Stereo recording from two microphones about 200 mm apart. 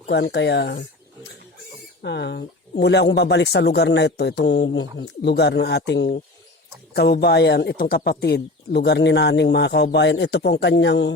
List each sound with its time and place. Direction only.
0.1 s speech: 60° left (ahead or behind)
2.0 s speech: 60° left (ahead or behind)